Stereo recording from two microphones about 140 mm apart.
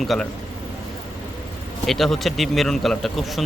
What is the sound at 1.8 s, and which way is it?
A man's voice, centre (ahead or behind).